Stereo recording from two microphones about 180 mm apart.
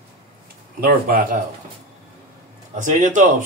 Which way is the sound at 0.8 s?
50° right (ahead or behind).